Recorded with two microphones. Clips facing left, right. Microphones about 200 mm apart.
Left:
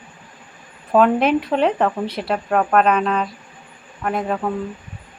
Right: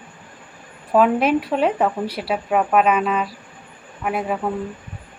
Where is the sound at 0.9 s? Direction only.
5° right (ahead or behind).